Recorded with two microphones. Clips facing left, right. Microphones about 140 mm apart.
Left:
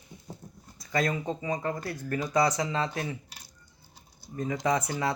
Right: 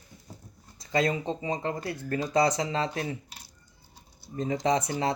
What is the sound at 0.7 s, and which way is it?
Speech, 25° right (ahead or behind).